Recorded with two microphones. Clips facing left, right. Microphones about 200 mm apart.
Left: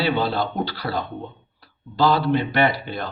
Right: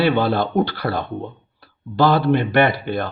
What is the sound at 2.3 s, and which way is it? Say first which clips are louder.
Speech: right 3 dB; 55° right (ahead or behind).